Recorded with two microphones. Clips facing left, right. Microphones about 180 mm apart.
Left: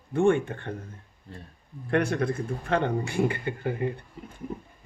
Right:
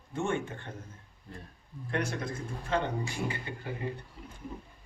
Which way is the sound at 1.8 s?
60° left (ahead or behind).